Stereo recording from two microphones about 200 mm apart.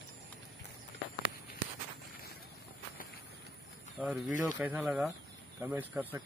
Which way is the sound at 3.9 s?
5° right (ahead or behind).